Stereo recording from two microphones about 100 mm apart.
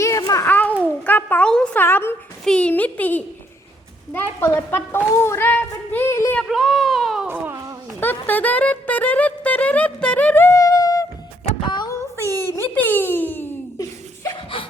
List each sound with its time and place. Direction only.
0.0 s a sound: 35° left (ahead or behind)
0.4 s babbling: 20° left (ahead or behind)
1.0 s a child's voice: 15° left (ahead or behind)
1.7 s a child's voice: 20° left (ahead or behind)
2.4 s a child's voice: 10° left (ahead or behind); by 6.3 s 25° left (ahead or behind)
6.4 s speech: centre (ahead or behind)
7.3 s speech: 20° right (ahead or behind)
7.9 s speech: 20° left (ahead or behind)
10.6 s humming: 35° left (ahead or behind)
11.6 s a sound: 50° left (ahead or behind)
12.4 s a sound: 25° left (ahead or behind)